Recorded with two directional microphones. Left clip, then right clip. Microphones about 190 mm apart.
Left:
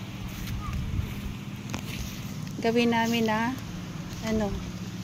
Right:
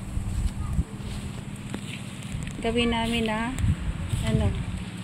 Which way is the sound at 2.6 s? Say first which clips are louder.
Left 1 dB; 15° left (ahead or behind).